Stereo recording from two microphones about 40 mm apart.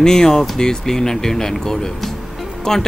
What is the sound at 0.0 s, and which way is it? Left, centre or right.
Speech, centre.